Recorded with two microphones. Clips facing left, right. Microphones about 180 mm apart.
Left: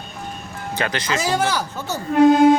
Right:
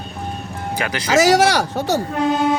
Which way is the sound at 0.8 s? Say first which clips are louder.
Left 1 dB; 10° right (ahead or behind).